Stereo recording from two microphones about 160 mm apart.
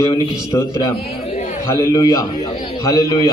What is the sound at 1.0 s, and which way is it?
Speech, 40° left (ahead or behind).